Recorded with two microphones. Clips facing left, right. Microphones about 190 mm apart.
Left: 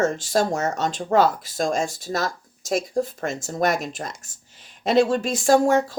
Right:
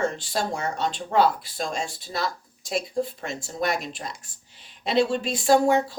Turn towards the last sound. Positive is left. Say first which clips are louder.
# left 2 dB
turn(degrees=45)  # may be behind; listen again after turning